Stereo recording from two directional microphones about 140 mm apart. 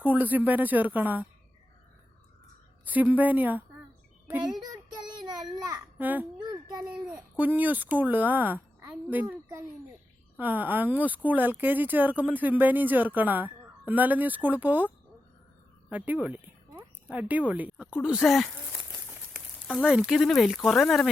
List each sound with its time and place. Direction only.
0.0 s speech: 10° right (ahead or behind)
2.8 s speech: 10° right (ahead or behind)
6.0 s a child's voice: 10° right (ahead or behind)
6.4 s a sound: 30° right (ahead or behind)
7.1 s speech: 10° right (ahead or behind)
15.9 s speech: 10° right (ahead or behind)
19.1 s a sound: 5° right (ahead or behind)
19.8 s speech: 5° right (ahead or behind)